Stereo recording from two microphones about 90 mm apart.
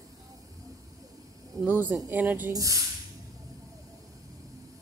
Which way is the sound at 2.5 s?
40° right (ahead or behind).